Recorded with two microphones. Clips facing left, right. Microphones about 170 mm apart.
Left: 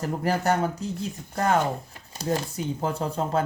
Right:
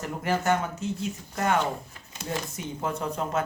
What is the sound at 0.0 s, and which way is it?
Speech, 35° left (ahead or behind).